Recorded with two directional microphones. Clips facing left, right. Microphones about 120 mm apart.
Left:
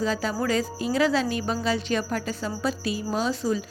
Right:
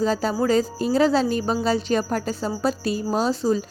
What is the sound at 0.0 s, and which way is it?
A woman's voice, 35° right (ahead or behind).